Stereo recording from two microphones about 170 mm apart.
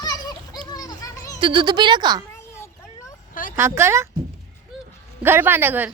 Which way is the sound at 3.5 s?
15° right (ahead or behind).